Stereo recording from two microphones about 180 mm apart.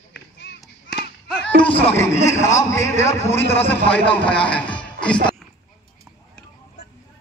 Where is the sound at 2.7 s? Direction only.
15° left (ahead or behind).